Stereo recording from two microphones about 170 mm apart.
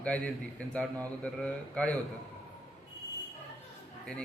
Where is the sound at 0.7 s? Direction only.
5° left (ahead or behind).